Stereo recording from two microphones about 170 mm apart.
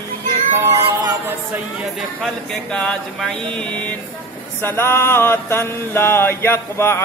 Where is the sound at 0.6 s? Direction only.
15° right (ahead or behind).